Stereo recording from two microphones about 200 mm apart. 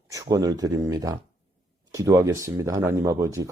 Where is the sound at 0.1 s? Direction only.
15° right (ahead or behind).